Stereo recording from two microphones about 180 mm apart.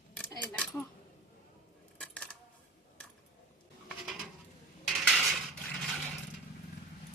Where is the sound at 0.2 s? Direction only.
5° left (ahead or behind).